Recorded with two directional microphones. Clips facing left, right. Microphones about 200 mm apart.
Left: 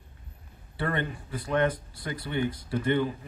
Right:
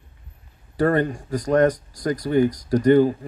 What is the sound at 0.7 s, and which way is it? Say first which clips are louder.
Speech: right 11 dB; 45° right (ahead or behind).